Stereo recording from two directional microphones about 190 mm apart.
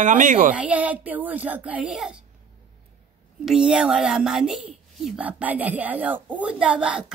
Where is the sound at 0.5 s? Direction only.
5° right (ahead or behind).